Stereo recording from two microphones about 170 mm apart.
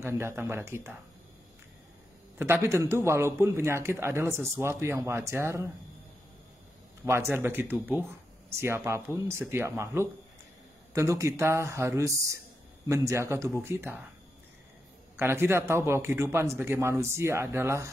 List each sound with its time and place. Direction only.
0.0 s a man's voice: 15° right (ahead or behind)
2.3 s a man's voice: 15° right (ahead or behind)
7.1 s a man's voice: 15° right (ahead or behind)
15.1 s a man's voice: 15° right (ahead or behind)